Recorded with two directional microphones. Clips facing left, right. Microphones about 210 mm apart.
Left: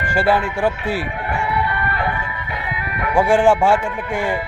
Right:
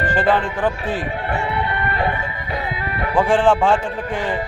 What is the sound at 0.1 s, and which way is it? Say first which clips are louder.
Speech: left 3 dB; 10° left (ahead or behind).